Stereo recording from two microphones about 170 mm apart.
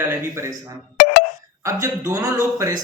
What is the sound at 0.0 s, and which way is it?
Speech, 15° right (ahead or behind).